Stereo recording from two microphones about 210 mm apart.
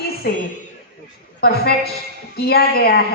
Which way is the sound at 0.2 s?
50° left (ahead or behind).